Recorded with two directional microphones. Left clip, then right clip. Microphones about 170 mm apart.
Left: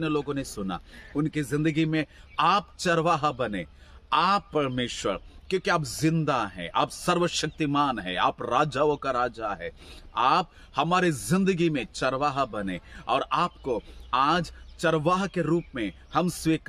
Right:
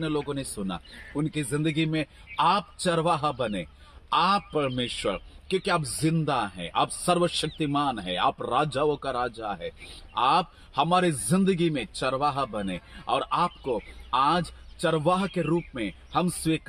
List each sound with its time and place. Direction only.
0.3 s a man's voice: 15° left (ahead or behind)
4.7 s speech: 50° left (ahead or behind)
6.1 s a man's voice: 15° left (ahead or behind)